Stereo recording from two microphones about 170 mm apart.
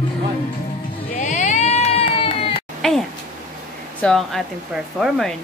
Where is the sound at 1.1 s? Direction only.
45° left (ahead or behind).